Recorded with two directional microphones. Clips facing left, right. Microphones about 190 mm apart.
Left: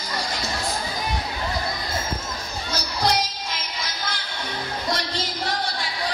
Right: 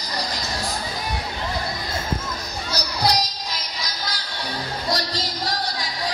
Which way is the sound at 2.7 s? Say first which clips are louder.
Right 1 dB; 35° right (ahead or behind).